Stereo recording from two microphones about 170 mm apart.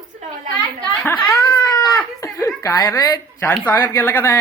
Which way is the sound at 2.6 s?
20° left (ahead or behind).